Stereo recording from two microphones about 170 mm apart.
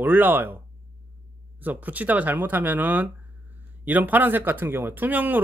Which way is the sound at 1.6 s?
10° right (ahead or behind).